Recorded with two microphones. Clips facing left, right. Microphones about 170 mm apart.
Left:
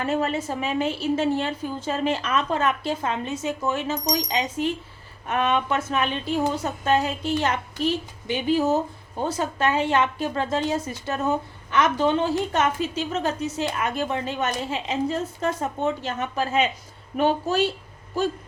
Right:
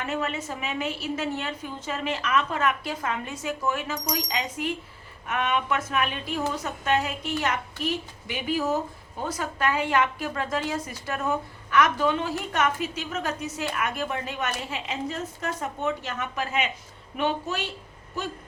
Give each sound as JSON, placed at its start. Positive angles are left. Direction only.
{"t": 0.0, "sound": "a woman's voice", "side_deg": 35}